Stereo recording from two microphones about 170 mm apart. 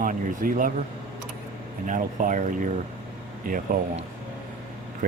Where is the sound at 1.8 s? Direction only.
50° right (ahead or behind).